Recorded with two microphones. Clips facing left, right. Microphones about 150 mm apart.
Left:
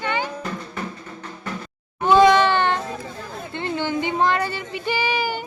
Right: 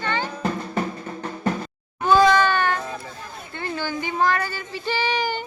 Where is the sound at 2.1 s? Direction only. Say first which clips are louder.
Left 2 dB; 20° left (ahead or behind).